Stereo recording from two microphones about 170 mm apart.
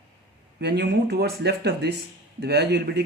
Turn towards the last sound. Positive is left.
turn(degrees=-70)  # may be behind; listen again after turning